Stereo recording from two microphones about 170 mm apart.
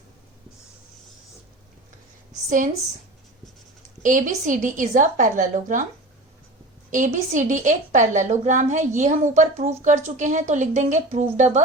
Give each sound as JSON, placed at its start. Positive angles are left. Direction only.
{"t": 4.0, "sound": "a woman's voice", "side_deg": -50}
{"t": 6.9, "sound": "a woman's voice", "side_deg": -50}